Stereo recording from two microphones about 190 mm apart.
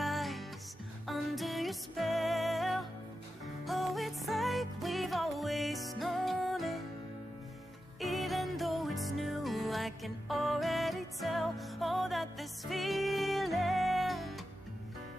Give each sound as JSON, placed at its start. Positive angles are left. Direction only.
{"t": 0.0, "sound": "music", "side_deg": 0}
{"t": 8.0, "sound": "music", "side_deg": 0}